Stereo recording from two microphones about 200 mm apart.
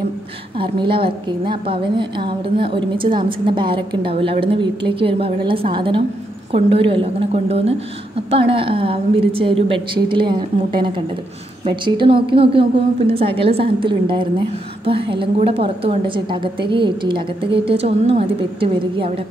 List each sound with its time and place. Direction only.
0.6 s a woman's voice: 25° right (ahead or behind)